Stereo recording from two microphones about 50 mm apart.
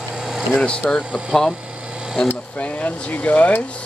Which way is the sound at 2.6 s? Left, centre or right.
Left.